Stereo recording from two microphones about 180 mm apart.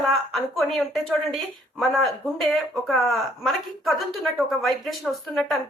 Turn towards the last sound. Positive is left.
turn(degrees=0)  # may be behind; listen again after turning